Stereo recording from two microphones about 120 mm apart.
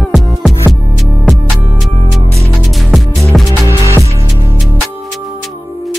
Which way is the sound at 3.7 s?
20° right (ahead or behind).